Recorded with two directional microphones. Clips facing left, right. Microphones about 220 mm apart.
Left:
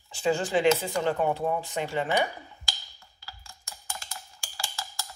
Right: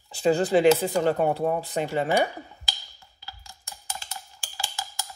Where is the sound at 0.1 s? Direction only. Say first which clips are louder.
Right 5 dB; 35° right (ahead or behind).